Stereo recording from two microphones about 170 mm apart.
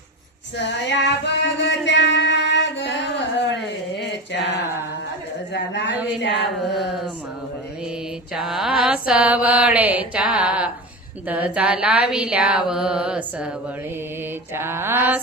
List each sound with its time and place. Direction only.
0.5 s a sound: 90° left
8.3 s mantra: 5° right (ahead or behind)
11.3 s a woman's voice: 10° right (ahead or behind)
14.5 s a woman's voice: 15° right (ahead or behind)